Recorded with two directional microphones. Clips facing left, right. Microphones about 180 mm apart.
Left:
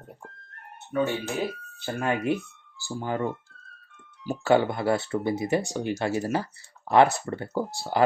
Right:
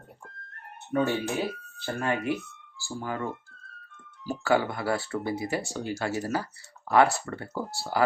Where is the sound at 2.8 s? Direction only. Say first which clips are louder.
Left 4 dB; 25° left (ahead or behind).